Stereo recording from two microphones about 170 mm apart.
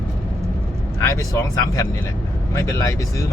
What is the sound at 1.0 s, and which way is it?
Speech, 20° left (ahead or behind).